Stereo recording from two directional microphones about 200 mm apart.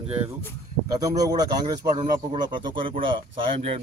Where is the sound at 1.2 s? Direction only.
20° right (ahead or behind).